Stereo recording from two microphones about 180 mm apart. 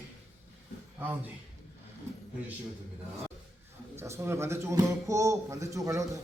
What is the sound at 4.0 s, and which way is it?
Speech, 15° right (ahead or behind).